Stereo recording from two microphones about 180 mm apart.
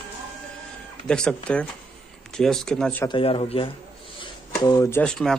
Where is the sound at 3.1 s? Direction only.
30° left (ahead or behind).